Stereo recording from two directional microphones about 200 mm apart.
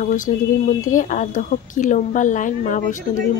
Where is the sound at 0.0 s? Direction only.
40° left (ahead or behind).